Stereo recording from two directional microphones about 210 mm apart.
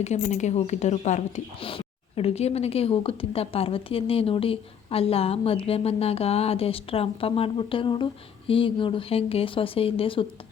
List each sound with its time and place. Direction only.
0.0 s a woman's voice: 35° left (ahead or behind)